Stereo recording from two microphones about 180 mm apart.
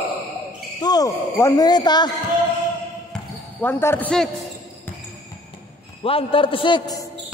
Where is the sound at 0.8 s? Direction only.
20° left (ahead or behind).